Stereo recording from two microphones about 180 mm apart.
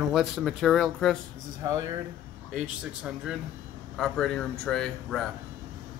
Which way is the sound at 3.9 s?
5° left (ahead or behind).